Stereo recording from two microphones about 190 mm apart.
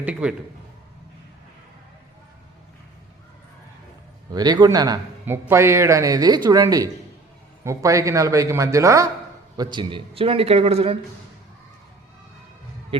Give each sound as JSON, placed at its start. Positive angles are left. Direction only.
{"t": 0.0, "sound": "speech", "side_deg": -5}
{"t": 4.3, "sound": "a man's voice", "side_deg": -20}